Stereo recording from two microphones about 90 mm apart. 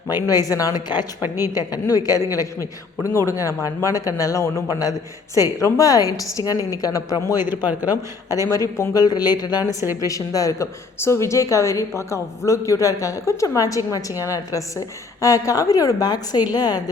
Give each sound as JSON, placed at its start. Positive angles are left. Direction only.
{"t": 0.1, "sound": "speech", "side_deg": 45}
{"t": 7.7, "sound": "speech", "side_deg": -20}
{"t": 8.3, "sound": "speech", "side_deg": 40}
{"t": 9.0, "sound": "speech", "side_deg": 50}